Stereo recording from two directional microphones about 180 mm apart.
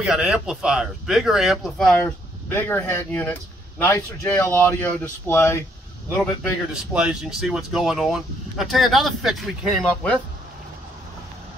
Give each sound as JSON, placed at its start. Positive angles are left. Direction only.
{"t": 0.0, "sound": "speech", "side_deg": -5}
{"t": 6.7, "sound": "speech", "side_deg": -5}